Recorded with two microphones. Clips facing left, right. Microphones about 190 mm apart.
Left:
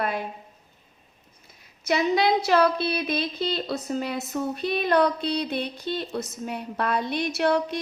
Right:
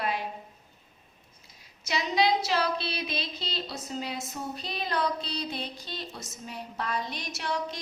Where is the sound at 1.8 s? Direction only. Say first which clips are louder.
Left 5 dB; 55° left (ahead or behind).